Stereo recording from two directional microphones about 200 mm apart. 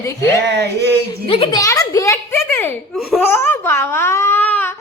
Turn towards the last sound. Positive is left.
turn(degrees=10)  # may be behind; listen again after turning